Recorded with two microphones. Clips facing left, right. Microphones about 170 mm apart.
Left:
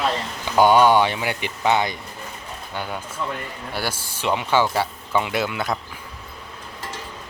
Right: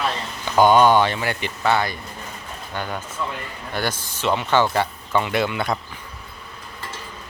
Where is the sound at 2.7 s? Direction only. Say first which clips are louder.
Right 1 dB; 10° left (ahead or behind).